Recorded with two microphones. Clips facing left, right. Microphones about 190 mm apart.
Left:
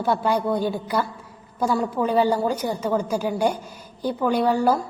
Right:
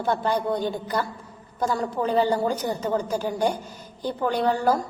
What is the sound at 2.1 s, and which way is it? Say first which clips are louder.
A woman's voice: left 1 dB; 10° left (ahead or behind).